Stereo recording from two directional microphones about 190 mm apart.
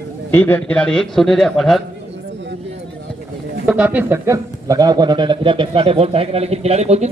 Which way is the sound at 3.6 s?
5° right (ahead or behind).